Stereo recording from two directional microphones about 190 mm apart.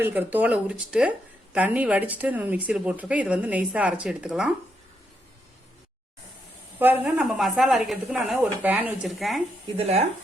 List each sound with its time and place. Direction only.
0.0 s speech: 10° right (ahead or behind)
6.7 s speech: 10° right (ahead or behind)
9.7 s speech: 35° right (ahead or behind)